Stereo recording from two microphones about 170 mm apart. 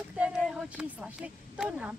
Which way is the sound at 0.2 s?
5° right (ahead or behind).